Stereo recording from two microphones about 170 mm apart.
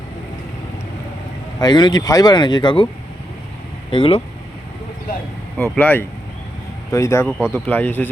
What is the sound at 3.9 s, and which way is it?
Speech, 30° left (ahead or behind).